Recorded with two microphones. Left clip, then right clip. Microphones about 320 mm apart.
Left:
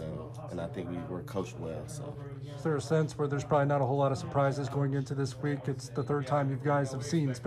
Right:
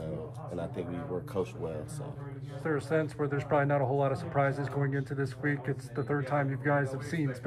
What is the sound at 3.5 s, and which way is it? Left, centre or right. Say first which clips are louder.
Speech: even; centre.